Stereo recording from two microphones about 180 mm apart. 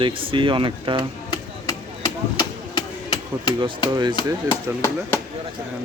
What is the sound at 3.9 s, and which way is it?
Speech, 25° right (ahead or behind).